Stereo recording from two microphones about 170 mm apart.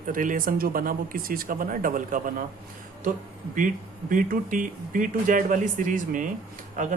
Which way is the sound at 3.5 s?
50° right (ahead or behind).